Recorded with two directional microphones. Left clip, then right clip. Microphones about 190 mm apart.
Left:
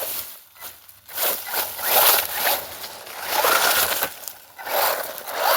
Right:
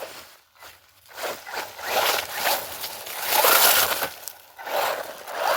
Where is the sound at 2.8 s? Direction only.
45° right (ahead or behind).